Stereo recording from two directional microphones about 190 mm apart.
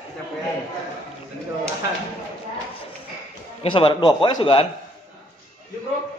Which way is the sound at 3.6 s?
30° left (ahead or behind).